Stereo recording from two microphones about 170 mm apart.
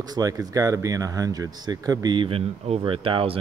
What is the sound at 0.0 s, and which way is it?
Speech, 20° right (ahead or behind).